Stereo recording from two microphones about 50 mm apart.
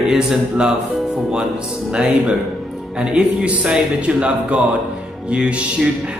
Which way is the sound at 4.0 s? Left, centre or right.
Right.